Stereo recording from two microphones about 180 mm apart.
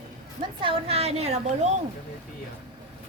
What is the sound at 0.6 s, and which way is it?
A woman's voice, 35° right (ahead or behind).